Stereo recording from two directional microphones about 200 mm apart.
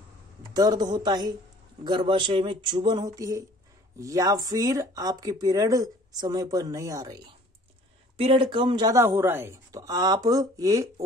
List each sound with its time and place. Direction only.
0.5 s speech: 20° right (ahead or behind)